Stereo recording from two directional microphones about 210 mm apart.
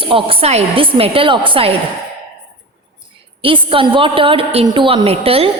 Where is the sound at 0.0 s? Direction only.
25° right (ahead or behind).